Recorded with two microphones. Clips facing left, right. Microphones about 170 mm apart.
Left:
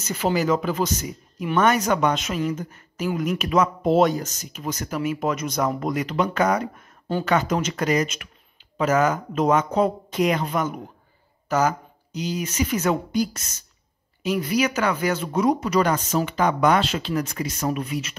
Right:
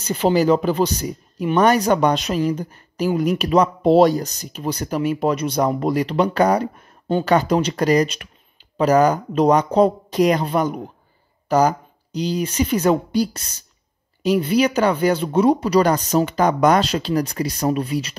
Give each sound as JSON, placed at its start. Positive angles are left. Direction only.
{"t": 0.0, "sound": "speech", "side_deg": -30}